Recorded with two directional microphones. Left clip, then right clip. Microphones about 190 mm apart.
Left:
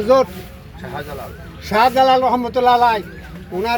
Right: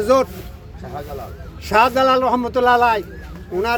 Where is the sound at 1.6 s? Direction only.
10° right (ahead or behind).